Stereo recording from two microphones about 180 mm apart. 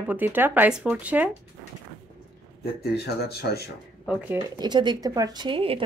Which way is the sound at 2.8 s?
60° left (ahead or behind).